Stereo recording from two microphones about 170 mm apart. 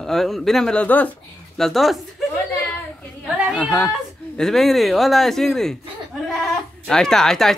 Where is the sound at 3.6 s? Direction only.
5° left (ahead or behind).